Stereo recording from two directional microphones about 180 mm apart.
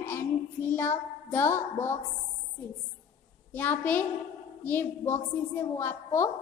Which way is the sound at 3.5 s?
10° left (ahead or behind).